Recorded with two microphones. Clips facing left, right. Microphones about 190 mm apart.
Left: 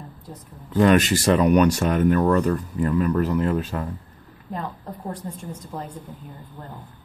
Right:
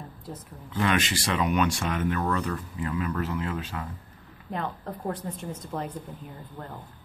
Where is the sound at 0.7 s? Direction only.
40° left (ahead or behind).